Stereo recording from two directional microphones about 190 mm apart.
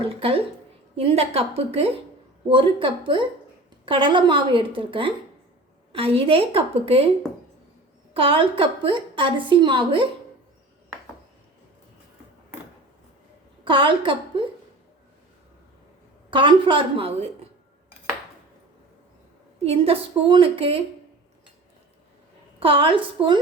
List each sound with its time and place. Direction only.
0.0 s a woman's voice: 30° right (ahead or behind)
8.1 s a woman's voice: 25° right (ahead or behind)
13.7 s a woman's voice: 25° right (ahead or behind)
16.3 s a woman's voice: 25° right (ahead or behind)
19.6 s a woman's voice: 30° right (ahead or behind)
22.6 s a woman's voice: 25° right (ahead or behind)